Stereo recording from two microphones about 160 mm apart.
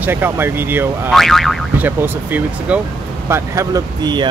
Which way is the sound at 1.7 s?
10° right (ahead or behind).